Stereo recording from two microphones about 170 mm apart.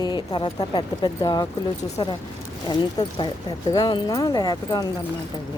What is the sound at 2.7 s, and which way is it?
Speech, 25° left (ahead or behind).